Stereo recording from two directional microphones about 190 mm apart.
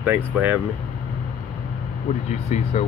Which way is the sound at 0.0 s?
10° right (ahead or behind).